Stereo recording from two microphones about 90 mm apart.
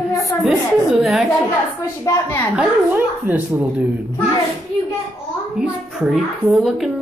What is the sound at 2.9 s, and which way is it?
Speech, 20° right (ahead or behind).